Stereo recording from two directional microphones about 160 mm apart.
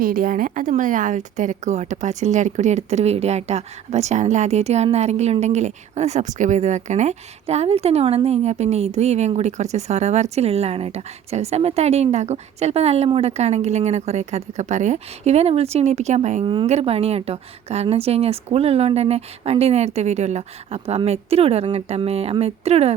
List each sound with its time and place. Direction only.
0.0 s a woman's voice: 60° right (ahead or behind); by 23.0 s 40° right (ahead or behind)